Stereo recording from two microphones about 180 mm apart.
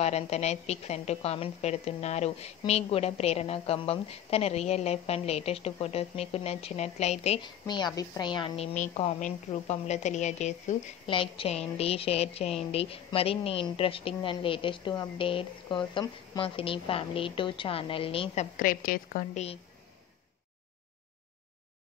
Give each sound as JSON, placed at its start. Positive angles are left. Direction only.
{"t": 0.0, "sound": "a woman's voice", "side_deg": 35}
{"t": 7.4, "sound": "a woman's voice", "side_deg": 25}
{"t": 8.7, "sound": "a woman's voice", "side_deg": 35}
{"t": 11.1, "sound": "a woman's voice", "side_deg": 30}